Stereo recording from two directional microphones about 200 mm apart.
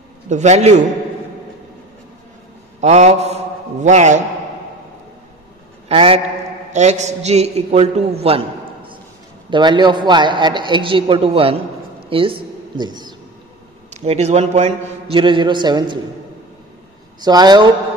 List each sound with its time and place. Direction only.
0.3 s a man's voice: 35° right (ahead or behind)
2.8 s a man's voice: 35° right (ahead or behind)
5.9 s a man's voice: 30° right (ahead or behind)
14.0 s a man's voice: 35° right (ahead or behind)
17.2 s a man's voice: 20° right (ahead or behind)